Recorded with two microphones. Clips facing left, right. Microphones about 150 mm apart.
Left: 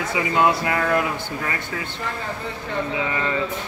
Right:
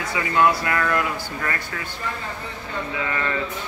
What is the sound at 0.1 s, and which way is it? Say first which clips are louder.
Speech: even; 20° left (ahead or behind).